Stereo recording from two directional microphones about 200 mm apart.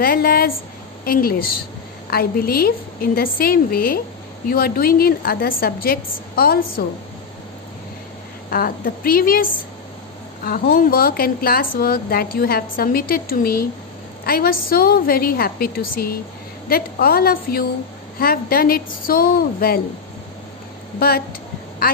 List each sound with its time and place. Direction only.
0.0 s a woman's voice: 50° left (ahead or behind)
8.5 s a woman's voice: 45° left (ahead or behind)